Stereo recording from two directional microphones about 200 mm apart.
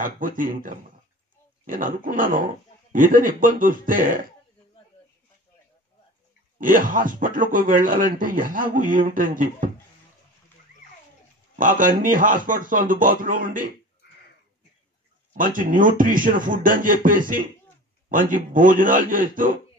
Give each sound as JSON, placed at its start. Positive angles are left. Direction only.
{"t": 0.4, "sound": "speech", "side_deg": -45}
{"t": 6.6, "sound": "speech", "side_deg": -45}
{"t": 11.5, "sound": "speech", "side_deg": -40}
{"t": 15.3, "sound": "speech", "side_deg": -40}